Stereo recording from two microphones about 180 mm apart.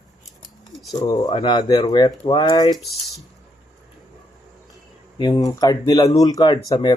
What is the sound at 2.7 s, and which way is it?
Speech, centre (ahead or behind).